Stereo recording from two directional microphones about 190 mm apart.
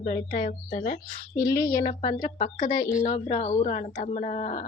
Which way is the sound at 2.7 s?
20° left (ahead or behind).